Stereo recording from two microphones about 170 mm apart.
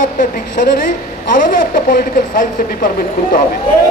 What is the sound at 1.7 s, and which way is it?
Speech, 55° left (ahead or behind).